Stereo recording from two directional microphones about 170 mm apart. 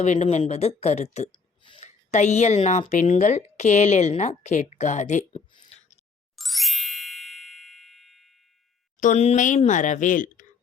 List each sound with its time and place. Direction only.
0.0 s speech: 40° left (ahead or behind)
1.3 s a sound: 30° left (ahead or behind)
1.8 s a woman's voice: 40° left (ahead or behind)
5.5 s a sound: 40° left (ahead or behind)
6.3 s ding: centre (ahead or behind)
9.0 s speech: 45° left (ahead or behind)